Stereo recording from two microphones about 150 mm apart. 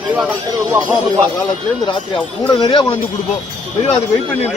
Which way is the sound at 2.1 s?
30° left (ahead or behind).